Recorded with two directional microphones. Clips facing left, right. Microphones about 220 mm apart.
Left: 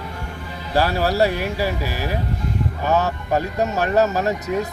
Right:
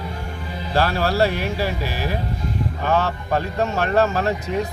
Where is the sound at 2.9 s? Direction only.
10° left (ahead or behind).